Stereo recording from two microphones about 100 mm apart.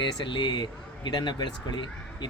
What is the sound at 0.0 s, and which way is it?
Speech, 55° left (ahead or behind).